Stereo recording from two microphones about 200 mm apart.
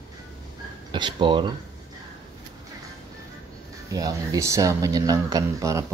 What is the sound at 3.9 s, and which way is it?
Speech, 15° right (ahead or behind).